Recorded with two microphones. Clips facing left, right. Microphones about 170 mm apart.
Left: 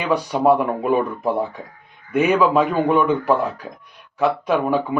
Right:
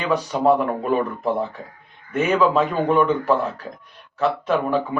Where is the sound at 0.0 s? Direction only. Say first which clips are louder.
Left 1 dB; 10° left (ahead or behind).